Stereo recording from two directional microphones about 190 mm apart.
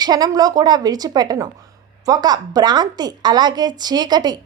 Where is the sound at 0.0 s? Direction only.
20° right (ahead or behind).